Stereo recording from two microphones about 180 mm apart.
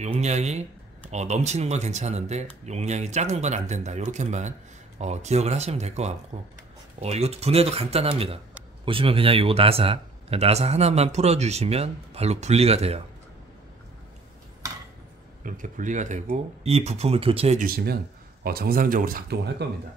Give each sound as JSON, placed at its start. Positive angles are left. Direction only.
{"t": 0.0, "sound": "speech", "side_deg": -40}
{"t": 15.4, "sound": "speech", "side_deg": -45}
{"t": 17.6, "sound": "speech", "side_deg": -55}